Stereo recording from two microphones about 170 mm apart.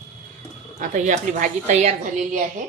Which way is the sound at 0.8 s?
45° right (ahead or behind).